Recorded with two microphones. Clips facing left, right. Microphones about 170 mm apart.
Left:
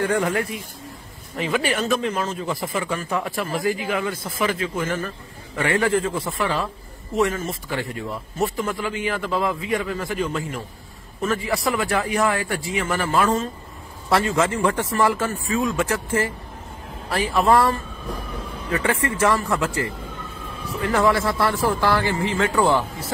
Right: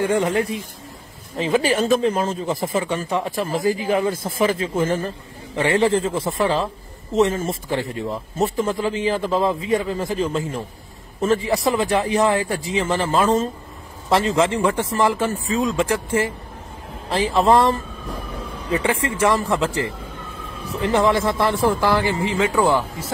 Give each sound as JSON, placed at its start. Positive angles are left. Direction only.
{"t": 0.0, "sound": "a man's voice", "side_deg": -20}
{"t": 3.1, "sound": "a man's voice", "side_deg": -20}
{"t": 3.6, "sound": "a man's voice", "side_deg": -35}
{"t": 20.8, "sound": "a man's voice", "side_deg": -20}